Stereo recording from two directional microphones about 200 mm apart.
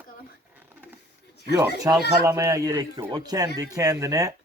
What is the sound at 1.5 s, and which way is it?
Speech, 15° right (ahead or behind).